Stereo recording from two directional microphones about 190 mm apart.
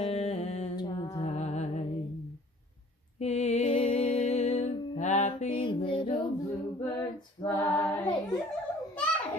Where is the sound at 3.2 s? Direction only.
35° left (ahead or behind).